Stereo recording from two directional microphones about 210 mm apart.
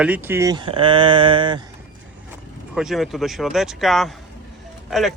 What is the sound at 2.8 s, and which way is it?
Speech, centre (ahead or behind).